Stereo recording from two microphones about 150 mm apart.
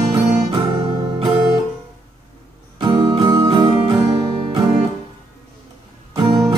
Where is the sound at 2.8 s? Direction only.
30° right (ahead or behind).